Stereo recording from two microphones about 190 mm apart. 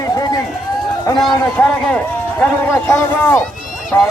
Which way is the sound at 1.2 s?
5° left (ahead or behind).